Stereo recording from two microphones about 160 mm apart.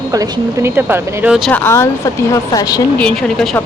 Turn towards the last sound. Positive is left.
turn(degrees=5)  # may be behind; listen again after turning